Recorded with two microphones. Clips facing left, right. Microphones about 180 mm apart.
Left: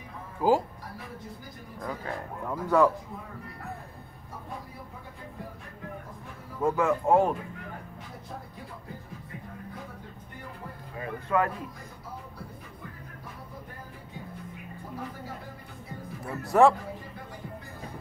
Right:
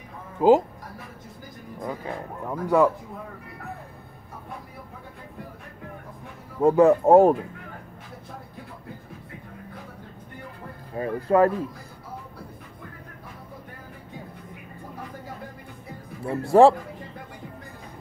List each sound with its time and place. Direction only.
0.4 s speech: 20° right (ahead or behind)
1.8 s speech: 20° right (ahead or behind)
6.8 s speech: 40° right (ahead or behind)
11.0 s speech: 35° right (ahead or behind)
16.2 s speech: 30° right (ahead or behind)